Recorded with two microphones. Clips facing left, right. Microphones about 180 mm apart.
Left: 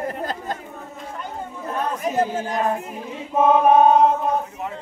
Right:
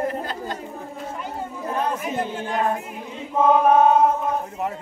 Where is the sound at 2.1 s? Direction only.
40° left (ahead or behind).